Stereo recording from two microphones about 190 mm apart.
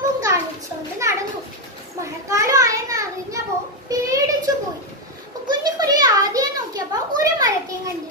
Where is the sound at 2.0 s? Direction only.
15° right (ahead or behind).